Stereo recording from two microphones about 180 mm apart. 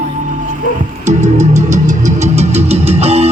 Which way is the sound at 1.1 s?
40° right (ahead or behind).